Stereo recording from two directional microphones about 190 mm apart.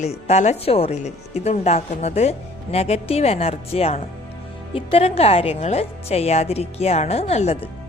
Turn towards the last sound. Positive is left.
turn(degrees=35)  # may be behind; listen again after turning